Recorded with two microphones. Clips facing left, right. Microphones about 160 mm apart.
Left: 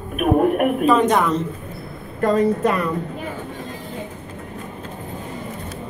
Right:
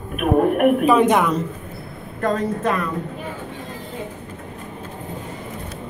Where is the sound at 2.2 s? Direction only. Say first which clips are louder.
Left 4 dB; 5° left (ahead or behind).